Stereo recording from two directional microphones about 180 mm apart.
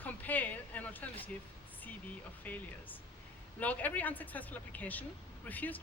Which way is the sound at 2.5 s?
10° left (ahead or behind).